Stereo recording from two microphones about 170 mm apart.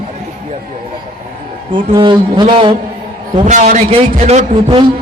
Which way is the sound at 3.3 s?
45° right (ahead or behind).